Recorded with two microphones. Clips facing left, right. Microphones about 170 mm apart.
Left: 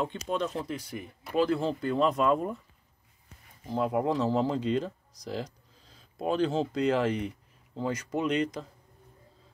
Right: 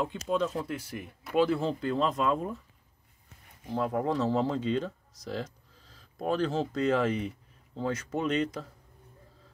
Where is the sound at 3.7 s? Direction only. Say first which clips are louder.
Left 2 dB; 5° left (ahead or behind).